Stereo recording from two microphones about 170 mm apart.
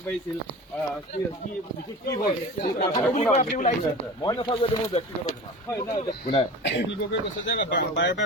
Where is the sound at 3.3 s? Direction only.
45° left (ahead or behind).